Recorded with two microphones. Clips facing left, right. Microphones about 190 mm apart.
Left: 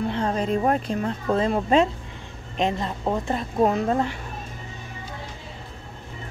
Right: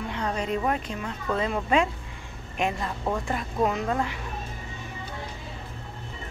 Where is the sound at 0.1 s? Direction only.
30° left (ahead or behind).